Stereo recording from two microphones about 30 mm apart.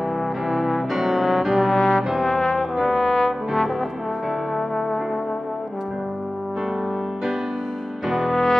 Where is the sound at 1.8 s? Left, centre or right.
Left.